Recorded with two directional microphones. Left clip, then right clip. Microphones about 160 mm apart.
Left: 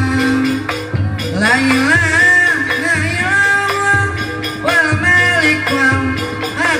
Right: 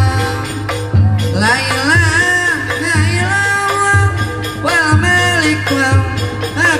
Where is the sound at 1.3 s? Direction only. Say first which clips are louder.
Left 1 dB; 20° right (ahead or behind).